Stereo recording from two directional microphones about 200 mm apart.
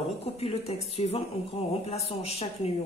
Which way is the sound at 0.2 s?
30° left (ahead or behind).